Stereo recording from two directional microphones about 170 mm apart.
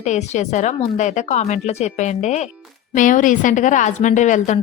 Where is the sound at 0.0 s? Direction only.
45° left (ahead or behind).